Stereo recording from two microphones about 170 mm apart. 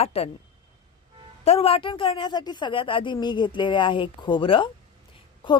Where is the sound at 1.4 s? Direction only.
35° left (ahead or behind).